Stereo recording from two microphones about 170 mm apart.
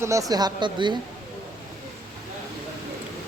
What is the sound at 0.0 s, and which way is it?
Speech, 20° right (ahead or behind).